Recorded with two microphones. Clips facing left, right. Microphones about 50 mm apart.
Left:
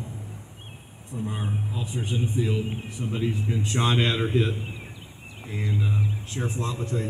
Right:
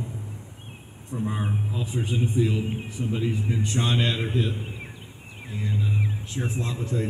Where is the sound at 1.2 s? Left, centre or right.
Centre.